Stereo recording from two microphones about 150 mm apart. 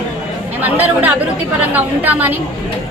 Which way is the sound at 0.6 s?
10° right (ahead or behind).